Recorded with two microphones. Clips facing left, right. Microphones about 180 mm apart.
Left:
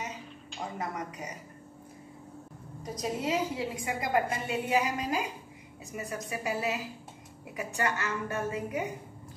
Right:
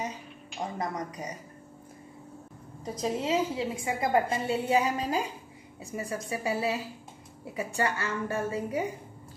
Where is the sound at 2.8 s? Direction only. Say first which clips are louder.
Right 2 dB; 30° right (ahead or behind).